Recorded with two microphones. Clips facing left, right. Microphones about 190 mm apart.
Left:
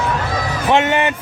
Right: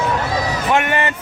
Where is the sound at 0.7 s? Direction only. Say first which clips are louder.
Left 4 dB; 20° left (ahead or behind).